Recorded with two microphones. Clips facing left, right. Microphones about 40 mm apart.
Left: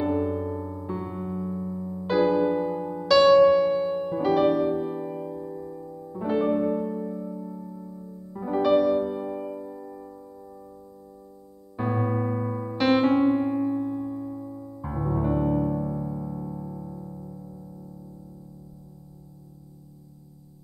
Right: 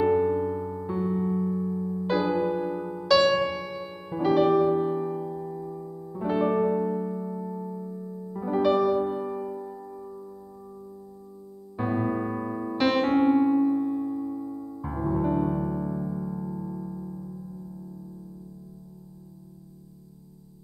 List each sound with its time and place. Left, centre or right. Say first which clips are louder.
0.0 s electric piano: right 3 dB; centre
0.8 s electric piano: right 8 dB; centre
2.6 s music: left 2 dB; centre
4.9 s piano: right 2 dB; centre
7.3 s electric piano: right 3 dB; centre
8.3 s electric piano: left 1 dB; centre
9.2 s music: even; centre
11.7 s electric piano: even; centre
13.1 s electric piano: even; right
13.5 s electric piano: right 3 dB; centre